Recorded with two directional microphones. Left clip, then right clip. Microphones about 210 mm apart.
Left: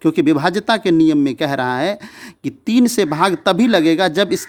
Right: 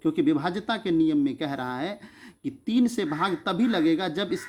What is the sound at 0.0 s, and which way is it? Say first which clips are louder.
Speech: left 10 dB; 50° left (ahead or behind).